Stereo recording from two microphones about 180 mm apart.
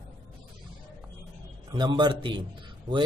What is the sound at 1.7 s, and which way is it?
Speech, 25° right (ahead or behind).